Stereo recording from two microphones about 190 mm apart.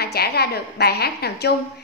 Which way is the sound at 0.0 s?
55° left (ahead or behind).